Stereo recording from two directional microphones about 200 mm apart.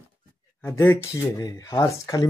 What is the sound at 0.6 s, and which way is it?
Speech, 15° left (ahead or behind).